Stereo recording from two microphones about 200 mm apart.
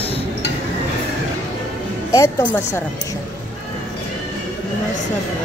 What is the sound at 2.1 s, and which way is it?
Speech, 15° left (ahead or behind).